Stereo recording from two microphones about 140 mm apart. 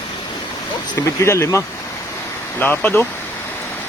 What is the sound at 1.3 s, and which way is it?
Speech, 20° left (ahead or behind).